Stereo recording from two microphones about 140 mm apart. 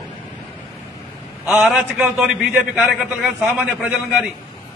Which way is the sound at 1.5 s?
10° right (ahead or behind).